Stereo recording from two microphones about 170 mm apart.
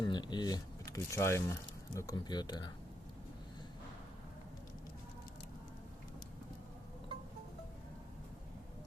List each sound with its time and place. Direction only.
0.0 s speech: 25° left (ahead or behind)